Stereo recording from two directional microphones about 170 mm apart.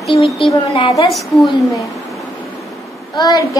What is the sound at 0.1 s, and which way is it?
A child's voice, 30° left (ahead or behind).